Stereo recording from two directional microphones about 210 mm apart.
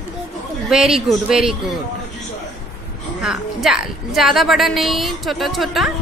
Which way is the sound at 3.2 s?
5° right (ahead or behind).